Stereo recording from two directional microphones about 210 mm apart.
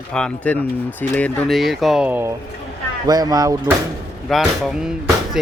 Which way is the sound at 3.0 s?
20° right (ahead or behind).